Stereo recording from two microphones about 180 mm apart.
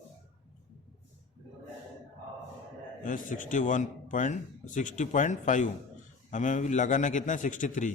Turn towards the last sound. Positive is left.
turn(degrees=45)  # may be behind; listen again after turning